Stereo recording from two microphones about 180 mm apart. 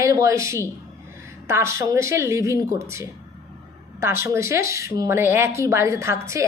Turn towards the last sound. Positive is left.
turn(degrees=-15)  # may be behind; listen again after turning